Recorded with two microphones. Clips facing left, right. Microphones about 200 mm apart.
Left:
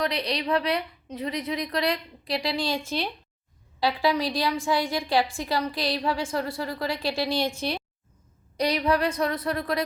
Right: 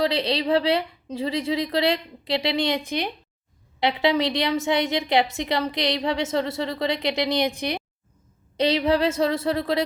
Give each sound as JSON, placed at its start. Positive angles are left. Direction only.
{"t": 0.0, "sound": "a woman's voice", "side_deg": -25}
{"t": 8.5, "sound": "a woman's voice", "side_deg": -25}